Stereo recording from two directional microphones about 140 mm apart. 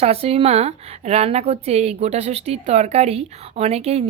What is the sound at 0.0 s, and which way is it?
A woman's voice, 45° right (ahead or behind).